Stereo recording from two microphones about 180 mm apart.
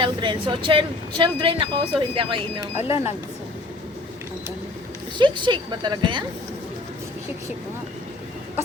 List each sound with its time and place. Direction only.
0.0 s speech: 25° right (ahead or behind)
2.7 s speech: 35° left (ahead or behind)
5.1 s speech: 25° right (ahead or behind)